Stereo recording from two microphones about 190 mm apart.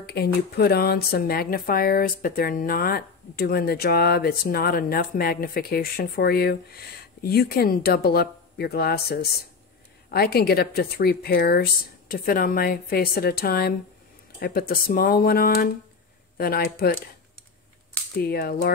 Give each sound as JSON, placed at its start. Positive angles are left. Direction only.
{"t": 0.0, "sound": "speech", "side_deg": 55}
{"t": 18.2, "sound": "speech", "side_deg": 55}